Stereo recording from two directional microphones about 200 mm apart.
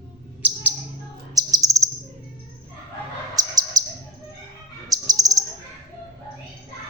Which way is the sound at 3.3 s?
20° right (ahead or behind).